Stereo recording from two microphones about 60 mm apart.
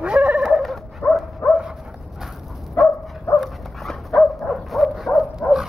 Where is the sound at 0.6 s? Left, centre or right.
Centre.